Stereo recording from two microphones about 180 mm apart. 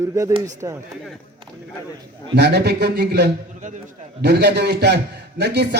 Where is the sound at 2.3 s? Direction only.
65° right (ahead or behind).